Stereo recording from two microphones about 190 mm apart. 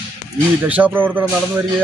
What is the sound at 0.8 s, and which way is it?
Speech, 10° right (ahead or behind).